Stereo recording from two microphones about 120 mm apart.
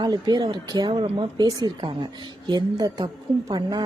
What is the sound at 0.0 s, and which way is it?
A woman's voice, 35° right (ahead or behind).